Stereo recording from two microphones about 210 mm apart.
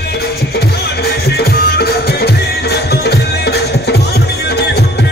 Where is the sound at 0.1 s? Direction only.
50° left (ahead or behind).